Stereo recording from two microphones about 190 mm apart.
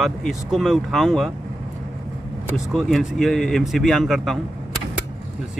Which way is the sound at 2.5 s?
Centre (ahead or behind).